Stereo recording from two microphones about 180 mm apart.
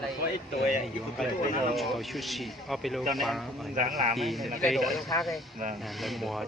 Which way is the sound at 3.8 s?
40° right (ahead or behind).